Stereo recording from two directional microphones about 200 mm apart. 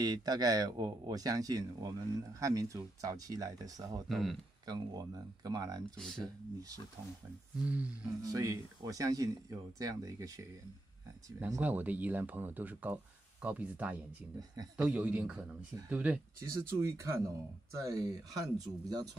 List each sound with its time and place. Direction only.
0.0 s speech: 20° right (ahead or behind)
4.1 s speech: centre (ahead or behind)
4.6 s speech: 20° right (ahead or behind)
5.9 s speech: centre (ahead or behind)
7.5 s speech: 5° right (ahead or behind)
8.2 s speech: 15° right (ahead or behind)